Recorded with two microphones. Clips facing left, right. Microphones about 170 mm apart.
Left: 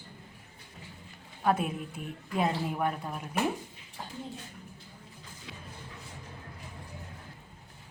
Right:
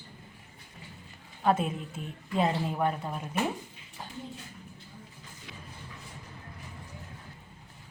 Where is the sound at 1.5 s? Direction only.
10° left (ahead or behind).